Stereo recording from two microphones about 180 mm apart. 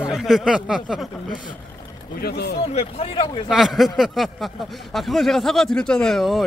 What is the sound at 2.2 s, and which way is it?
Speech, 60° left (ahead or behind).